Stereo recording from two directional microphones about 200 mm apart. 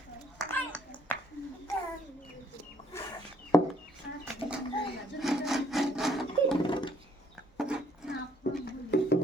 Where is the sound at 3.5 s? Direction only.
15° left (ahead or behind).